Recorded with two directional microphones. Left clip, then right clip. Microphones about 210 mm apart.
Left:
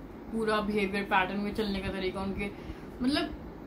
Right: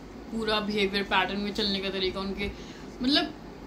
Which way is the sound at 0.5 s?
10° left (ahead or behind).